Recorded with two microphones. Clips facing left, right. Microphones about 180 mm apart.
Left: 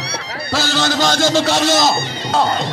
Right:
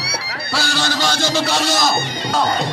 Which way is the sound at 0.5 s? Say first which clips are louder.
Left 4 dB; 45° left (ahead or behind).